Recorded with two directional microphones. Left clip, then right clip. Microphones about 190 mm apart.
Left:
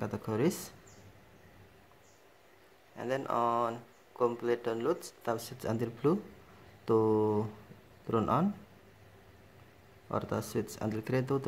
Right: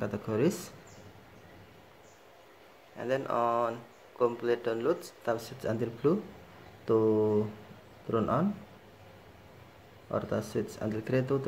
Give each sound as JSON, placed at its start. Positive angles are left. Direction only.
{"t": 0.0, "sound": "speech", "side_deg": 20}
{"t": 3.0, "sound": "speech", "side_deg": 15}
{"t": 10.1, "sound": "speech", "side_deg": 25}